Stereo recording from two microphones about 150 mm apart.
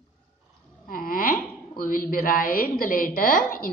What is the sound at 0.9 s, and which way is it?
Wail, 75° left (ahead or behind).